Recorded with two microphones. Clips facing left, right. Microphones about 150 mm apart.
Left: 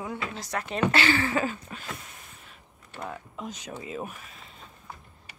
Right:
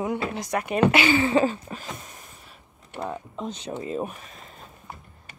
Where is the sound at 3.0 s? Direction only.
30° right (ahead or behind).